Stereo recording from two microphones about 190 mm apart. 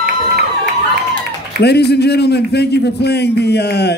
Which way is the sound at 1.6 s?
60° left (ahead or behind).